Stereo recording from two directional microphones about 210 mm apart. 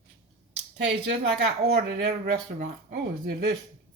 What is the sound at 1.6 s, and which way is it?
Speech, 45° right (ahead or behind).